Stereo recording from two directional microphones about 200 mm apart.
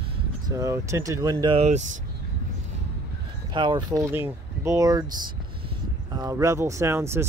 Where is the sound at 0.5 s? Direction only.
15° right (ahead or behind).